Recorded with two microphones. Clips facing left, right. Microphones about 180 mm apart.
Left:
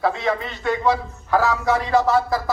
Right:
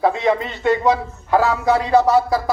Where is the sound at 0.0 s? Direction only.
20° right (ahead or behind).